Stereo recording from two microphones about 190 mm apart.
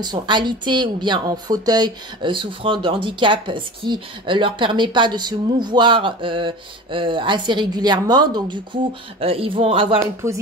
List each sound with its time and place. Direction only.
0.0 s a woman's voice: 25° right (ahead or behind)